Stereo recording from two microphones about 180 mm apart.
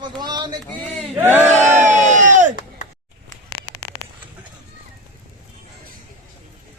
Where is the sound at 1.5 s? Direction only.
40° right (ahead or behind).